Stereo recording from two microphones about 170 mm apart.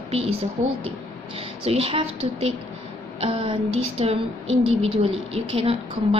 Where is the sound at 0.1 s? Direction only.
35° right (ahead or behind).